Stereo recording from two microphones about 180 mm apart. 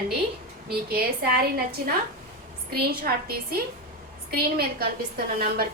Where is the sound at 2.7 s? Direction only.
60° right (ahead or behind).